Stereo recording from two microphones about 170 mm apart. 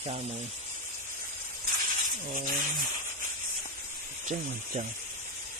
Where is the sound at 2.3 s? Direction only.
55° right (ahead or behind).